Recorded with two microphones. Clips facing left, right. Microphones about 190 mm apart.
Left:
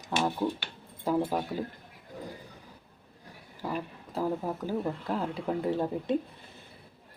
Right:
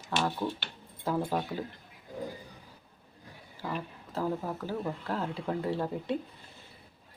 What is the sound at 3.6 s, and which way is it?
Speech, 10° left (ahead or behind).